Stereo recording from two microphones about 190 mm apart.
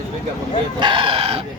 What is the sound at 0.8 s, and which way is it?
Chicken, 25° right (ahead or behind).